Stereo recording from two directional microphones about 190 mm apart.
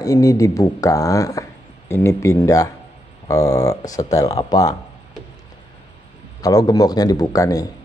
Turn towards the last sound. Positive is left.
turn(degrees=20)  # may be behind; listen again after turning